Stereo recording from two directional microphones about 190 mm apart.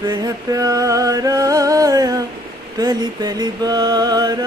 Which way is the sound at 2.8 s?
20° right (ahead or behind).